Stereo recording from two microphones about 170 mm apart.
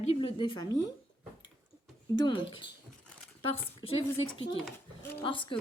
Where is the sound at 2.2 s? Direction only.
30° left (ahead or behind).